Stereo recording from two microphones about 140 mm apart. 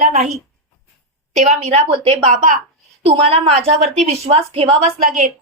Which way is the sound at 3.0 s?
45° right (ahead or behind).